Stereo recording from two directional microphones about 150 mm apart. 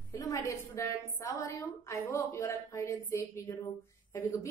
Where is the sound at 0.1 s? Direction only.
20° left (ahead or behind).